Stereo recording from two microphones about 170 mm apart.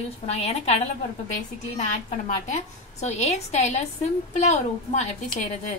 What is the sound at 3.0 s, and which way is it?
A woman's voice, 40° left (ahead or behind).